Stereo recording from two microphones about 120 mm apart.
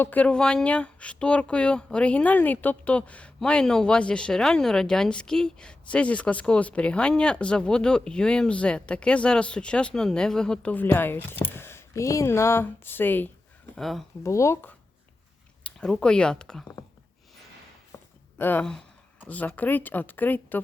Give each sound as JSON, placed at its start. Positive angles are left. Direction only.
{"t": 0.0, "sound": "speech", "side_deg": 15}
{"t": 13.7, "sound": "speech", "side_deg": 0}
{"t": 14.3, "sound": "speech", "side_deg": 25}
{"t": 15.6, "sound": "speech", "side_deg": 5}
{"t": 17.9, "sound": "a sound", "side_deg": 20}
{"t": 18.3, "sound": "speech", "side_deg": 15}